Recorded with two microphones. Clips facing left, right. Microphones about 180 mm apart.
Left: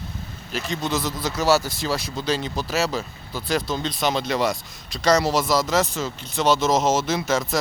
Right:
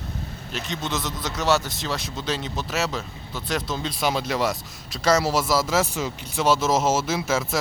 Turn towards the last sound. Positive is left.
turn(degrees=-5)  # may be behind; listen again after turning